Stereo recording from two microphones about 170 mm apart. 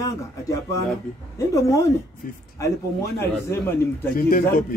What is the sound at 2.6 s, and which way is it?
Speech, 15° left (ahead or behind).